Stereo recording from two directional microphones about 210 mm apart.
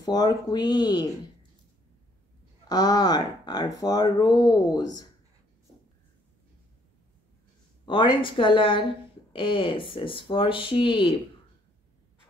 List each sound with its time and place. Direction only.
0.0 s speech: 20° left (ahead or behind)
2.7 s speech: 20° left (ahead or behind)
7.8 s speech: 20° left (ahead or behind)